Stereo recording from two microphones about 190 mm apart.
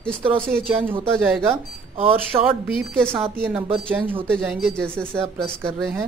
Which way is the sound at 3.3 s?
10° right (ahead or behind).